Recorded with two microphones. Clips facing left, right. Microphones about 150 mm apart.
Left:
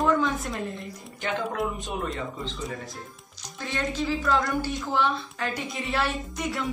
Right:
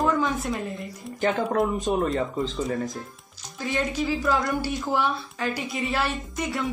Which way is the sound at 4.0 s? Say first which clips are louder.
Even; 10° right (ahead or behind).